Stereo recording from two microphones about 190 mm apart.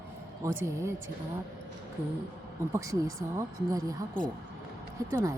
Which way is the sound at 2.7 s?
15° right (ahead or behind).